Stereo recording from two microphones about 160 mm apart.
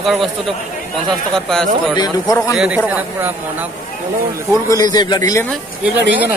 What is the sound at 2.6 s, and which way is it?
Speech, 10° right (ahead or behind).